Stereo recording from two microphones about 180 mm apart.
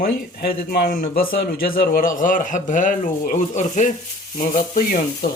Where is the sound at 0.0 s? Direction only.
60° left (ahead or behind).